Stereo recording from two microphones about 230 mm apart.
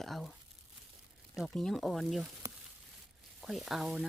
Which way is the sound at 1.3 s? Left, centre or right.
Centre.